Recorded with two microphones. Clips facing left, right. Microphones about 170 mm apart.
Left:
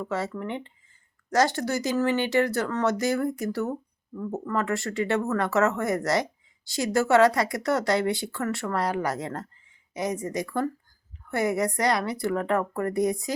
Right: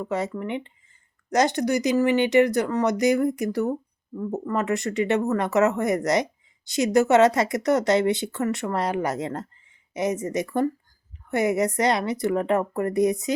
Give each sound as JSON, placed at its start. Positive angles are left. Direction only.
{"t": 0.0, "sound": "a woman's voice", "side_deg": -15}